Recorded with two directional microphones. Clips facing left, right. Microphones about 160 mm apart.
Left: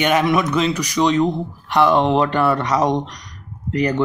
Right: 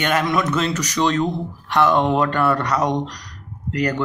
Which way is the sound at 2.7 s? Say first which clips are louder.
Left 2 dB; centre (ahead or behind).